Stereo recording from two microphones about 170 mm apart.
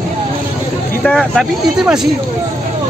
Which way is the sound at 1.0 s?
Centre (ahead or behind).